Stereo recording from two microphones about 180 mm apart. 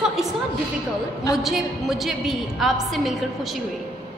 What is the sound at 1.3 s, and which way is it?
A woman's voice, centre (ahead or behind).